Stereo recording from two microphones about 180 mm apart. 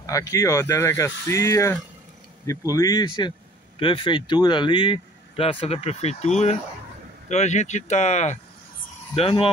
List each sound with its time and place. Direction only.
0.0 s speech: 20° left (ahead or behind)